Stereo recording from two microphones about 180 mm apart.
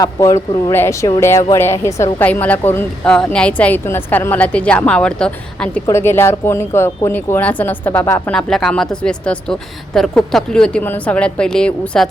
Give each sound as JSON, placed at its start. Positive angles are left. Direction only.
{"t": 0.0, "sound": "a man's voice", "side_deg": 20}